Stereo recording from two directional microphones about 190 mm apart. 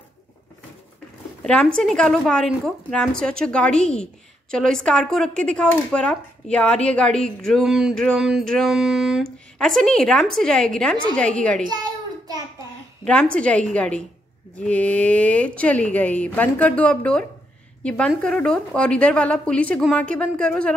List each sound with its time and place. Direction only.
1.4 s a woman's voice: 5° left (ahead or behind)
11.7 s child singing: 20° right (ahead or behind)
13.0 s a woman's voice: 5° left (ahead or behind)